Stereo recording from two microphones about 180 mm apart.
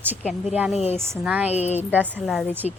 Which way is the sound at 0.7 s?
35° left (ahead or behind).